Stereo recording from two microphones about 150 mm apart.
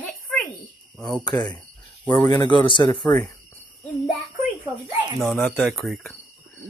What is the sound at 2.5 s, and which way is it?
Speech, 30° left (ahead or behind).